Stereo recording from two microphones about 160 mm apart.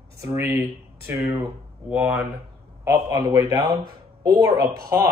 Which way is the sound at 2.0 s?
5° right (ahead or behind).